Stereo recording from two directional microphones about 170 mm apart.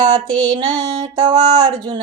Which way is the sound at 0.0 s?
25° right (ahead or behind).